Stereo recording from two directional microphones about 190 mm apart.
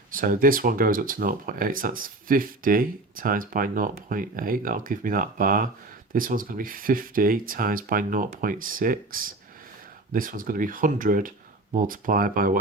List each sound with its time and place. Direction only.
0.1 s speech: 50° right (ahead or behind)